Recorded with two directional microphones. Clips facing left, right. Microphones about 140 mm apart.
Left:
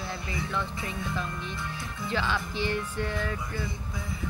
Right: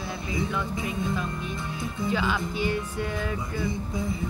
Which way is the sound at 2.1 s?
15° right (ahead or behind).